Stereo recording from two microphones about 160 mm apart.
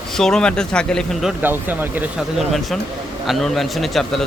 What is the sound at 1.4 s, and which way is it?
A man's voice, 10° right (ahead or behind).